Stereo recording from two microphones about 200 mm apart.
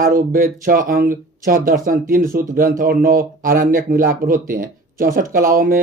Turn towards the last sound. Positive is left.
turn(degrees=-45)  # may be behind; listen again after turning